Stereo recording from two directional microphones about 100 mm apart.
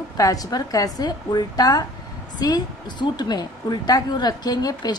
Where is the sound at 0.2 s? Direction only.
35° left (ahead or behind).